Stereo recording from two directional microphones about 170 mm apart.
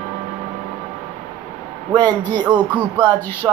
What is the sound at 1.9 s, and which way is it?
Speech, 25° right (ahead or behind).